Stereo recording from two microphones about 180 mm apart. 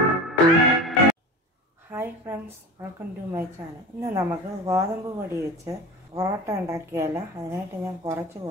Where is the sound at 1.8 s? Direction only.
15° right (ahead or behind).